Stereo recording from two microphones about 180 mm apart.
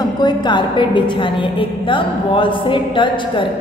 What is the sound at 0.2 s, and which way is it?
A woman's voice, 25° left (ahead or behind).